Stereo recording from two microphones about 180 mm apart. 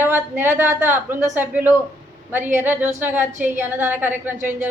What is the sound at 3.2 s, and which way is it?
Speech, 40° right (ahead or behind).